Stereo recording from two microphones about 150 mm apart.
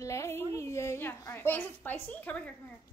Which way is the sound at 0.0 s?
20° left (ahead or behind).